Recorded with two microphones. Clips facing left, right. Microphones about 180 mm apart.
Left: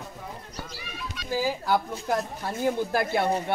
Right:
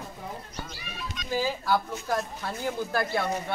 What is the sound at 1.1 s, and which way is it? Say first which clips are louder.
Speech: left 1 dB; 10° left (ahead or behind).